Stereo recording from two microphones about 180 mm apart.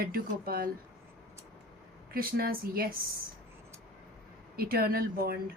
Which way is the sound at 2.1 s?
55° right (ahead or behind).